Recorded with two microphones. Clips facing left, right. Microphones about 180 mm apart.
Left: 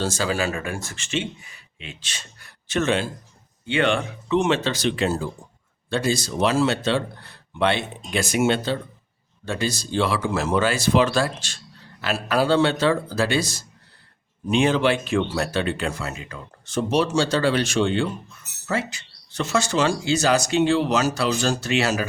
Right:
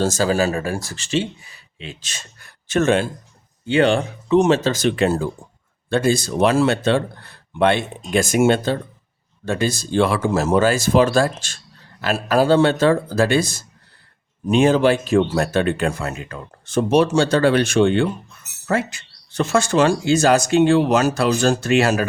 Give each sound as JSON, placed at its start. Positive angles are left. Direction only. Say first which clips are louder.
{"t": 0.0, "sound": "speech", "louder": "right 6 dB", "side_deg": -40}
{"t": 3.7, "sound": "speech", "louder": "right 5 dB", "side_deg": -35}